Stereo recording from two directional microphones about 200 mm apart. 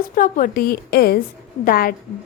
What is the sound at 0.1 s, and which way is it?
A woman's voice, 40° left (ahead or behind).